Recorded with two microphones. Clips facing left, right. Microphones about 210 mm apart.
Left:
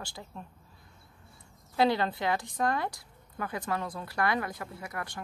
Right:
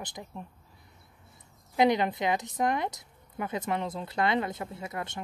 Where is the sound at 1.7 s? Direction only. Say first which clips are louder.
Right 2 dB; 20° right (ahead or behind).